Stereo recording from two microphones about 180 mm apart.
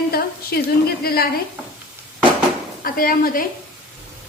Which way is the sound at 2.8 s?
55° left (ahead or behind).